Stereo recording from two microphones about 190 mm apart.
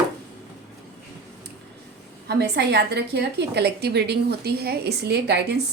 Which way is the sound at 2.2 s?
60° right (ahead or behind).